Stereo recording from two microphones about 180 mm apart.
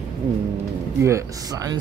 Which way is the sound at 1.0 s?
15° right (ahead or behind).